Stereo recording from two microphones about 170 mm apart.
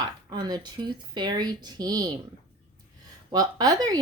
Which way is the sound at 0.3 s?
25° right (ahead or behind).